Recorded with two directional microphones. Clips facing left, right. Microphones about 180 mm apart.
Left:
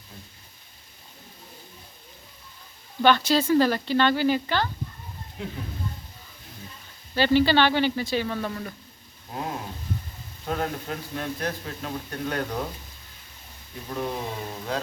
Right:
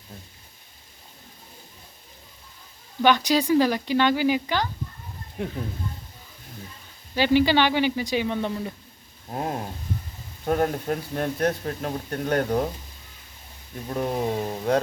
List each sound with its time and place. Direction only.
3.0 s speech: 15° right (ahead or behind)
5.4 s speech: 50° right (ahead or behind)
7.1 s speech: 15° right (ahead or behind)
9.3 s speech: 45° right (ahead or behind)
13.9 s speech: 45° right (ahead or behind)